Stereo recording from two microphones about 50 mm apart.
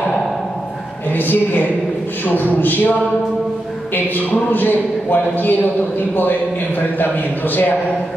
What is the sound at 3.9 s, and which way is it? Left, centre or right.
A man's voice, left.